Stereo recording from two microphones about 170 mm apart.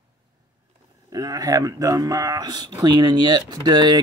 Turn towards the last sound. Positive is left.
turn(degrees=-25)  # may be behind; listen again after turning